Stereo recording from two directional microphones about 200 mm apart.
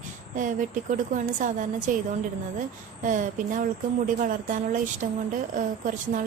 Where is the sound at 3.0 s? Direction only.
40° right (ahead or behind).